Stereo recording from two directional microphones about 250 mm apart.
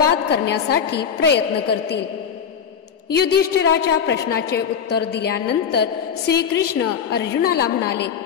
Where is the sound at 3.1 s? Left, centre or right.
Left.